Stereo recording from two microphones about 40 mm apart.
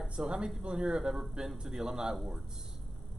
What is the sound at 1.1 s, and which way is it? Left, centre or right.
Speech, centre.